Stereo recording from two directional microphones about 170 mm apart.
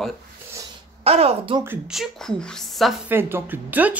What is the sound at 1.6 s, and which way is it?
Speech, 5° right (ahead or behind).